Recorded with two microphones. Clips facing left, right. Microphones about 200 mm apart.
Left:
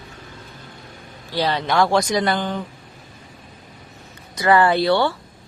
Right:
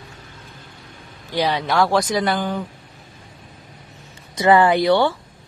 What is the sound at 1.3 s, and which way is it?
Speech, 15° right (ahead or behind).